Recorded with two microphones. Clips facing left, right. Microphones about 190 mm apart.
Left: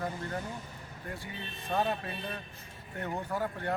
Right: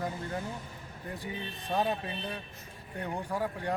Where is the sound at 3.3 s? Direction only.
15° right (ahead or behind).